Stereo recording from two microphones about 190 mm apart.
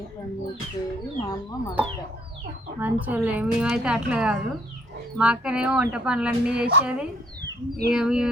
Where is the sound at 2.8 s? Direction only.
10° right (ahead or behind).